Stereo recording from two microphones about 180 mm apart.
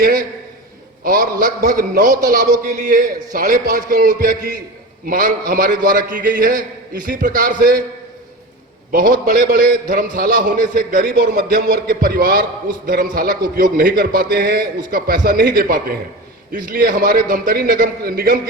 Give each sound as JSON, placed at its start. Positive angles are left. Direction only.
{"t": 0.0, "sound": "a sound", "side_deg": -55}
{"t": 1.0, "sound": "a man's voice", "side_deg": -55}
{"t": 8.9, "sound": "a man's voice", "side_deg": -50}